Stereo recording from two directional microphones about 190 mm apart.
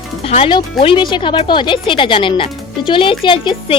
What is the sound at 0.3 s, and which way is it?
Speech, 30° left (ahead or behind).